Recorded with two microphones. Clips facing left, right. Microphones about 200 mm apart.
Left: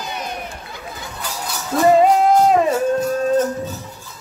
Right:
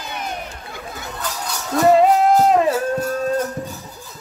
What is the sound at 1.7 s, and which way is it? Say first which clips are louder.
Music: even; centre (ahead or behind).